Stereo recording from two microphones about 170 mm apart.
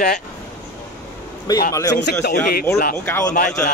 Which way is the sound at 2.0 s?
70° left (ahead or behind).